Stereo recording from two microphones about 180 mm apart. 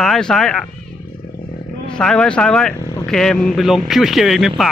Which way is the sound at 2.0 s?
5° left (ahead or behind).